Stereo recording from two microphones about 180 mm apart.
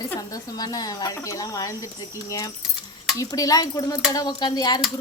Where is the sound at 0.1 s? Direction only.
20° left (ahead or behind).